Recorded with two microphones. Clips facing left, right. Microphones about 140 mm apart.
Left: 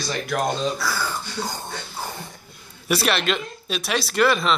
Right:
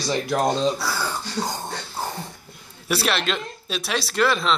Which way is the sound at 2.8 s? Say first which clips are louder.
Left 1 dB; 5° left (ahead or behind).